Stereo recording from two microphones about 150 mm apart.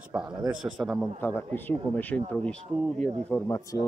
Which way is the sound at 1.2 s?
15° left (ahead or behind).